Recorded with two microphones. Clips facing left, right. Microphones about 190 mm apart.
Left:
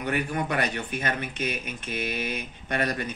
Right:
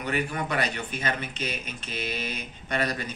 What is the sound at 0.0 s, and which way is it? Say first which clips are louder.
Speech: left 1 dB; 50° left (ahead or behind).